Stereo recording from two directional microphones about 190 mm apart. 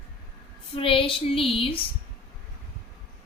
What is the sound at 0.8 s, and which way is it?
Female singing, 30° left (ahead or behind).